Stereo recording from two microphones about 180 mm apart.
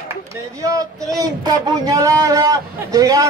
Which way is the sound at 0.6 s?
20° right (ahead or behind).